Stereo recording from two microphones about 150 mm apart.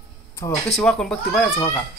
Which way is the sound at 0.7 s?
5° left (ahead or behind).